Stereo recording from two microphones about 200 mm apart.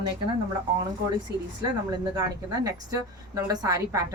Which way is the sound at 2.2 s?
15° right (ahead or behind).